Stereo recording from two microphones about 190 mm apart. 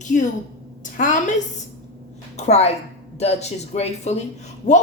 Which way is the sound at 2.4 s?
35° left (ahead or behind).